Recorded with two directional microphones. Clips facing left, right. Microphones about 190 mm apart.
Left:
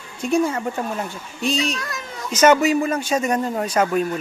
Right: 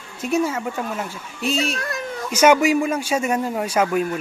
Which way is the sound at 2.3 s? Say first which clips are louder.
Even; 10° right (ahead or behind).